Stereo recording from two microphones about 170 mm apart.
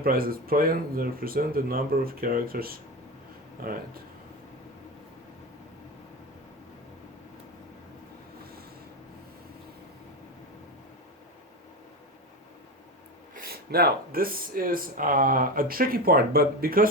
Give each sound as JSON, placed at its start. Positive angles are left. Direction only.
{"t": 0.0, "sound": "speech", "side_deg": -60}
{"t": 13.3, "sound": "speech", "side_deg": -60}